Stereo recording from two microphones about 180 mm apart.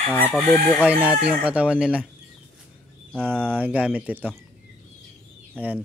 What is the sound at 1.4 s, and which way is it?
Speech, 5° right (ahead or behind).